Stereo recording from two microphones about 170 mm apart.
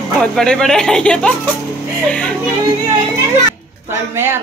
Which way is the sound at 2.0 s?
5° left (ahead or behind).